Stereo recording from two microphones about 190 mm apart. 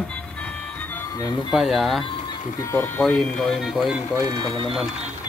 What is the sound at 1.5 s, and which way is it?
Speech, centre (ahead or behind).